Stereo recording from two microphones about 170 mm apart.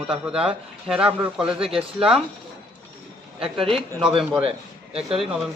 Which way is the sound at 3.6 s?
35° right (ahead or behind).